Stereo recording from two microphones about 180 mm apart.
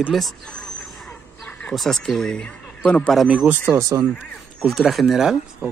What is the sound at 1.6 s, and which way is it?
Speech, centre (ahead or behind).